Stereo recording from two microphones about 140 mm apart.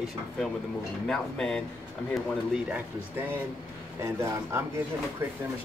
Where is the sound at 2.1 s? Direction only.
5° right (ahead or behind).